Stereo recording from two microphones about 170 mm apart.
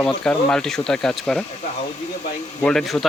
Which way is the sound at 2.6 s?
Centre (ahead or behind).